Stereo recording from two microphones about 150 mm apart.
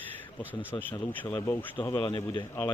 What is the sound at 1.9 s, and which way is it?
Speech, 30° left (ahead or behind).